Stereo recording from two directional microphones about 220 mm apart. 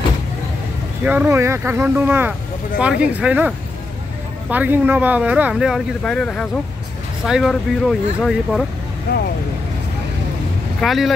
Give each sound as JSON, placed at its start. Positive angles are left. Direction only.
{"t": 1.0, "sound": "speech", "side_deg": -10}
{"t": 9.1, "sound": "speech", "side_deg": 50}
{"t": 10.8, "sound": "speech", "side_deg": 0}